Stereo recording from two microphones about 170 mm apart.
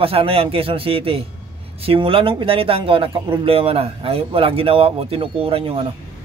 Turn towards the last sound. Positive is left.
turn(degrees=-35)  # may be behind; listen again after turning